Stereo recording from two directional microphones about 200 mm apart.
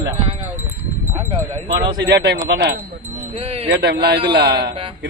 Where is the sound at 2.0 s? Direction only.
55° right (ahead or behind).